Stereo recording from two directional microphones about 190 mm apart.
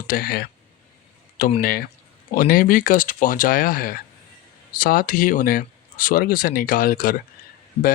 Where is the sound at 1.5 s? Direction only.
50° left (ahead or behind).